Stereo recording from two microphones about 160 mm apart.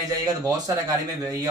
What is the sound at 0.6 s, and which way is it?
Speech, 20° right (ahead or behind).